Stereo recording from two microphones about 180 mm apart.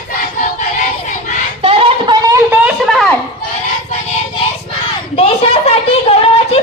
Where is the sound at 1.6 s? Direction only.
35° right (ahead or behind).